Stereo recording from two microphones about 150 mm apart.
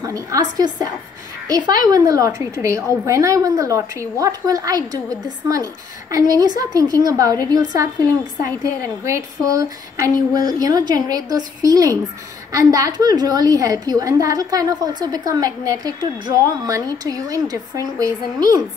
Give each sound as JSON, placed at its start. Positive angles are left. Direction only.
{"t": 0.0, "sound": "a woman's voice", "side_deg": -20}
{"t": 6.0, "sound": "a woman's voice", "side_deg": -25}